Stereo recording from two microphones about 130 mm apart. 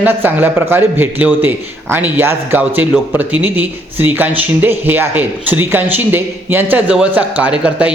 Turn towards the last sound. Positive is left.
turn(degrees=-10)  # may be behind; listen again after turning